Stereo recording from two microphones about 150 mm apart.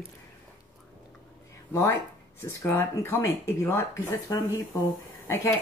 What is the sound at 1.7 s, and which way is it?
Speech, 20° left (ahead or behind).